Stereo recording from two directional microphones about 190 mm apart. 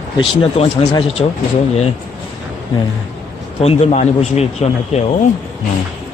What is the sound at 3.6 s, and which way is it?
Speech, 35° left (ahead or behind).